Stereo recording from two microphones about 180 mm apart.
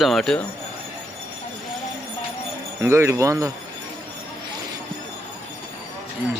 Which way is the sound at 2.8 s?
15° right (ahead or behind).